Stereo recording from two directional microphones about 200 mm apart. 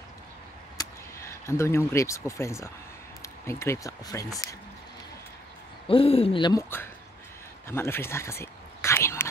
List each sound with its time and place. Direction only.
0.7 s speech: 15° left (ahead or behind)
5.9 s speech: 30° left (ahead or behind)
7.6 s a sound: 10° left (ahead or behind)